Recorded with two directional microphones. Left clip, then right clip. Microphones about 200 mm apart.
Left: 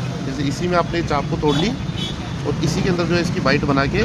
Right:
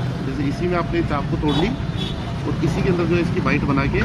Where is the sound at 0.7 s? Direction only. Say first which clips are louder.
Left 4 dB; 35° left (ahead or behind).